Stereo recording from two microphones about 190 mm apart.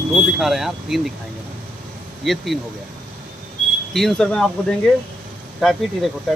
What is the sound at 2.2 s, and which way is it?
Speech, centre (ahead or behind).